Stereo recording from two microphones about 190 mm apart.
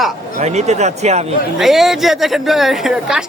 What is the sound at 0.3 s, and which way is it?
Speech, 35° right (ahead or behind).